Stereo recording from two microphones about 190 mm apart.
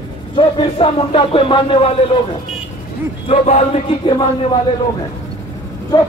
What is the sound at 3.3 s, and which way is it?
Music, 35° left (ahead or behind).